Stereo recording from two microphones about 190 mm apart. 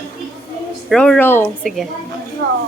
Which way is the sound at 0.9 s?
5° left (ahead or behind).